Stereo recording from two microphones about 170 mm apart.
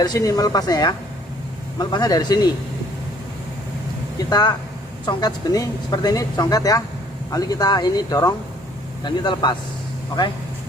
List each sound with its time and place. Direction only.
0.0 s speech: 20° left (ahead or behind)
4.3 s speech: 25° left (ahead or behind)